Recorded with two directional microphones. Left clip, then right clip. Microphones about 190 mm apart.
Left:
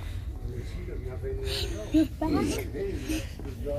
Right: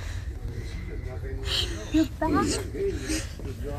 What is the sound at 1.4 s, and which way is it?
Speech, 15° left (ahead or behind).